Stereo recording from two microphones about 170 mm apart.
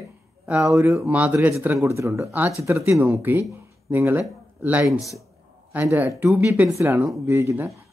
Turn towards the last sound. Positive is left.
turn(degrees=-15)  # may be behind; listen again after turning